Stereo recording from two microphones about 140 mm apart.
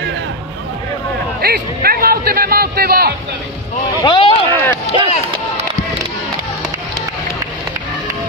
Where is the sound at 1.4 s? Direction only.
90° right.